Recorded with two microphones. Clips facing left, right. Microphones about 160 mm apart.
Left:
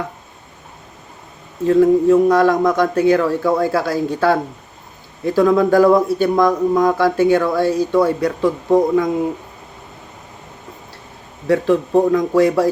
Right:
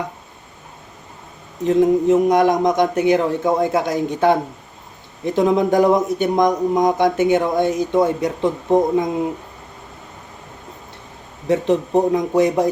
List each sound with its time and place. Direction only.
1.6 s speech: 20° right (ahead or behind)
11.4 s speech: 20° right (ahead or behind)